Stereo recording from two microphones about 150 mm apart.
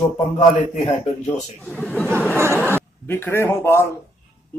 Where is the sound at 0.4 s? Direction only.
55° left (ahead or behind).